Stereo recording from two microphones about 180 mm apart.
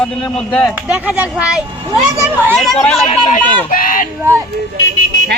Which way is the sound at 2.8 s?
Centre (ahead or behind).